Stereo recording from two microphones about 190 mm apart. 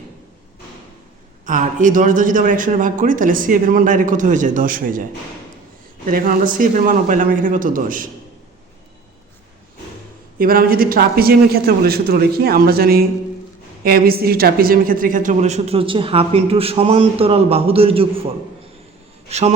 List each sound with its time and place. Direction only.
1.5 s speech: 40° right (ahead or behind)
6.1 s speech: 45° right (ahead or behind)
10.3 s a woman's voice: 50° right (ahead or behind); by 18.1 s 30° right (ahead or behind)
19.3 s a woman's voice: 35° right (ahead or behind)